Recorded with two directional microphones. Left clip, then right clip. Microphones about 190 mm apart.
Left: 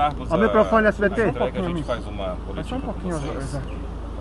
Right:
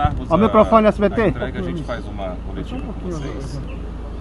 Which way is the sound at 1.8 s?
10° right (ahead or behind).